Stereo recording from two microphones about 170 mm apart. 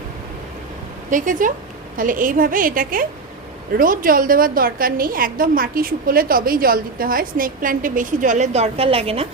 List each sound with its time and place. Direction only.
1.1 s a woman's voice: 50° right (ahead or behind); by 9.2 s 35° right (ahead or behind)